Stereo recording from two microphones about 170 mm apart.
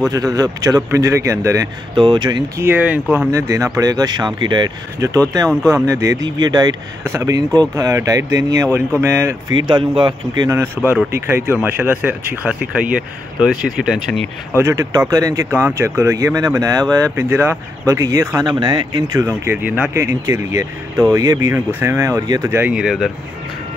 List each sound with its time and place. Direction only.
0.1 s speech: 20° right (ahead or behind)
2.6 s speech: 10° right (ahead or behind)
9.6 s speech: 30° right (ahead or behind); by 13.9 s 5° right (ahead or behind)
14.6 s speech: 20° right (ahead or behind); by 23.1 s centre (ahead or behind)